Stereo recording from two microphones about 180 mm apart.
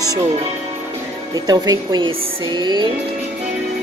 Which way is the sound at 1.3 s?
20° right (ahead or behind).